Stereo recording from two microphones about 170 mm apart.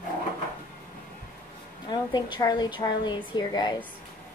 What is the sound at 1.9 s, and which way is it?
A woman's voice, 25° left (ahead or behind).